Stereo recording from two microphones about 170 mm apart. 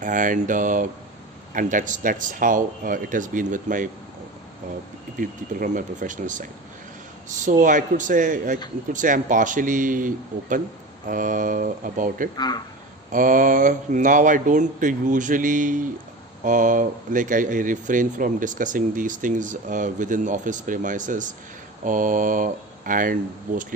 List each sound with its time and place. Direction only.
0.0 s speech: 50° right (ahead or behind)
5.1 s speech: 50° right (ahead or behind)
12.4 s speech: 25° left (ahead or behind)
13.1 s speech: 50° right (ahead or behind)